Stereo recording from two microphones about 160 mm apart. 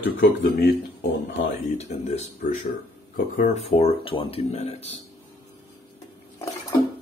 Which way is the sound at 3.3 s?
45° left (ahead or behind).